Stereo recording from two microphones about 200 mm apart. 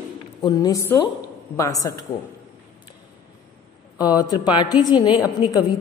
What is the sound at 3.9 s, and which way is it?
Speech, 20° left (ahead or behind).